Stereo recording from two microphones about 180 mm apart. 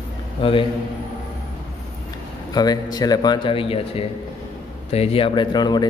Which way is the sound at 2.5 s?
20° left (ahead or behind).